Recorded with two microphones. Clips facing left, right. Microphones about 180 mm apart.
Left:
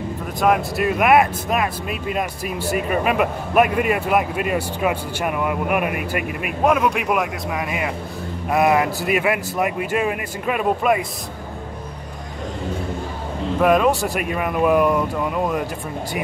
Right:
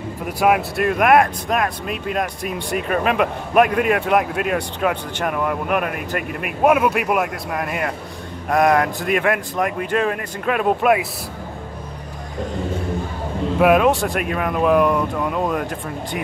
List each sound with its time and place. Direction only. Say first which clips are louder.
0.4 s speech: right 1 dB; 5° right (ahead or behind)
6.6 s speech: right 2 dB; 5° right (ahead or behind)
13.6 s speech: right 2 dB; 5° right (ahead or behind)